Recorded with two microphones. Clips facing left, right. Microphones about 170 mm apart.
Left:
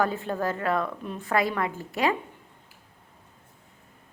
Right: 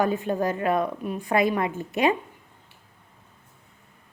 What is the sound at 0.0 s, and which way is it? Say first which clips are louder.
A woman's voice: right 3 dB; 15° right (ahead or behind).